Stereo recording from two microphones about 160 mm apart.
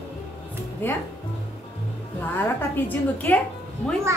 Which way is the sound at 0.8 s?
15° left (ahead or behind).